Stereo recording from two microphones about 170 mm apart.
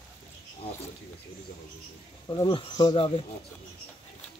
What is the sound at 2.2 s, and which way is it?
Speech, 25° left (ahead or behind).